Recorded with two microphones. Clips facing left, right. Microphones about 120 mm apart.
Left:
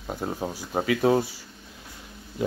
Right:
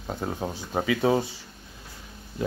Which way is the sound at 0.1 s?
5° left (ahead or behind).